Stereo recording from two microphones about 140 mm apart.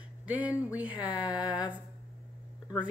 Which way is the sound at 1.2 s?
5° right (ahead or behind).